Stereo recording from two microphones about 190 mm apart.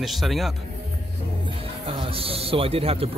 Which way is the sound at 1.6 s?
30° right (ahead or behind).